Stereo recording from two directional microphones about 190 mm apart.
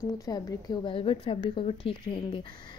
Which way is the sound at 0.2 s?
20° left (ahead or behind).